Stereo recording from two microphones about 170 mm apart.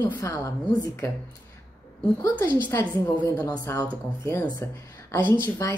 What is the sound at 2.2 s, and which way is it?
Speech, 20° left (ahead or behind).